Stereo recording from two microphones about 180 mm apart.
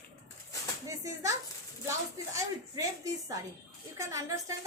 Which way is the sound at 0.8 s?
20° right (ahead or behind).